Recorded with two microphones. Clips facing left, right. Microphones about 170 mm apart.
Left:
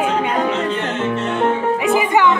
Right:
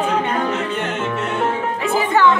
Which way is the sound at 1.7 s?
15° left (ahead or behind).